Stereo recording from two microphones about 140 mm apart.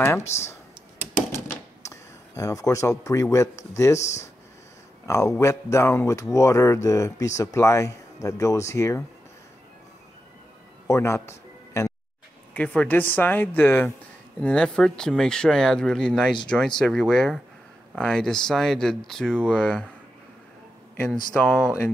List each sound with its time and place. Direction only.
0.4 s a sound: 20° left (ahead or behind)
5.0 s speech: 20° left (ahead or behind)
10.9 s music: 20° left (ahead or behind)
12.5 s speech: 10° left (ahead or behind)
20.9 s speech: 10° left (ahead or behind)